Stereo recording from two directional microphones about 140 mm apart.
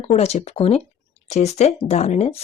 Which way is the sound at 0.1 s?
50° left (ahead or behind).